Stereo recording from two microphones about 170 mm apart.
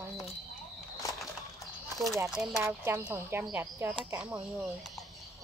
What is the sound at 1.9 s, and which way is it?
Speech, centre (ahead or behind).